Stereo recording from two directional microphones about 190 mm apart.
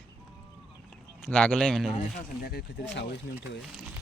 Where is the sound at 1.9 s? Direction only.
40° left (ahead or behind).